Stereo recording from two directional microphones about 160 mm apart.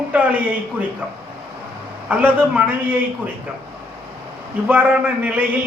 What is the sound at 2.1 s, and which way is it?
A man's voice, 10° right (ahead or behind).